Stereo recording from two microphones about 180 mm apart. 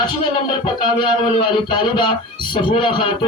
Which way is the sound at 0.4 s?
25° left (ahead or behind).